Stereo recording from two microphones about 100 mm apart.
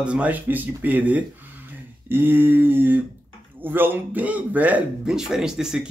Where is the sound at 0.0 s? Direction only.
10° right (ahead or behind).